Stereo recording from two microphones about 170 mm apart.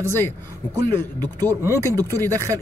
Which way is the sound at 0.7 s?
20° right (ahead or behind).